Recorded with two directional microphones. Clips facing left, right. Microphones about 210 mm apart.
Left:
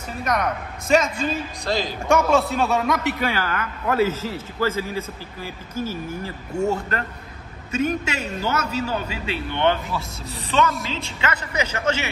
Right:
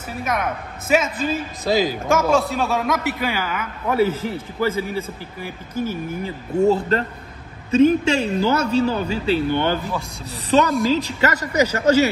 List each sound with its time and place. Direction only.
0.2 s a man's voice: 5° right (ahead or behind)
5.4 s speech: 55° right (ahead or behind)
6.7 s a man's voice: 30° right (ahead or behind)